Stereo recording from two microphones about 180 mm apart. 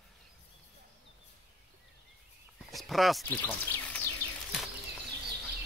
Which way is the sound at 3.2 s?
10° left (ahead or behind).